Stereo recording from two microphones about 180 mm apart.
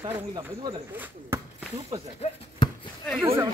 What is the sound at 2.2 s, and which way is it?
Speech, 35° left (ahead or behind).